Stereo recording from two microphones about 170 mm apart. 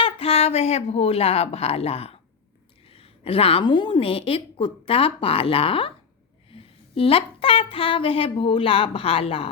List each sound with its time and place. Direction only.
0.0 s a woman's voice: 35° left (ahead or behind)